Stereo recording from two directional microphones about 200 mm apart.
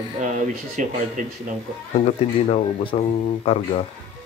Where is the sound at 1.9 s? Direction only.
35° left (ahead or behind).